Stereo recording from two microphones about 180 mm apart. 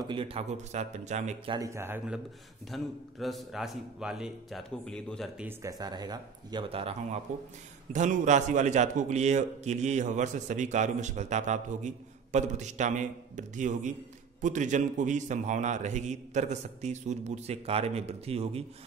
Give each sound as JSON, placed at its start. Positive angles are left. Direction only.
{"t": 0.1, "sound": "a man's voice", "side_deg": -30}
{"t": 1.5, "sound": "speech", "side_deg": -15}
{"t": 2.7, "sound": "a man's voice", "side_deg": 0}
{"t": 5.4, "sound": "speech", "side_deg": -20}
{"t": 7.9, "sound": "a man's voice", "side_deg": -40}